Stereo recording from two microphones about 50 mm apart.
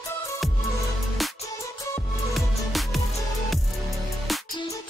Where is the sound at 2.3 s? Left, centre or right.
Centre.